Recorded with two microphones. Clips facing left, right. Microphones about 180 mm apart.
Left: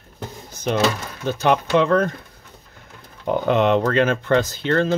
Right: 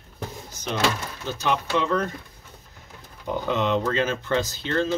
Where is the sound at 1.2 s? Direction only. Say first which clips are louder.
Left 7 dB; 55° left (ahead or behind).